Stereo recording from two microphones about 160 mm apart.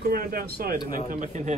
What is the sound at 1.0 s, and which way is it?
Speech, 55° right (ahead or behind).